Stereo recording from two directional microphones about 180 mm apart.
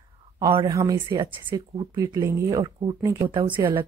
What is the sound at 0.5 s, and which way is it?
Speech, 20° right (ahead or behind).